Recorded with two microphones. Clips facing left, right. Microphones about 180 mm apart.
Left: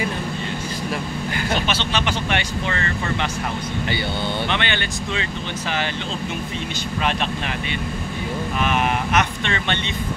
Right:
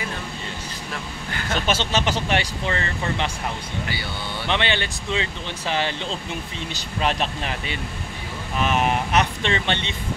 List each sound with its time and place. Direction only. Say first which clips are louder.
1.7 s speech: right 1 dB; 40° right (ahead or behind)
4.5 s speech: even; 30° right (ahead or behind)
7.0 s speech: right 1 dB; 35° right (ahead or behind)
8.6 s speech: right 1 dB; 35° right (ahead or behind)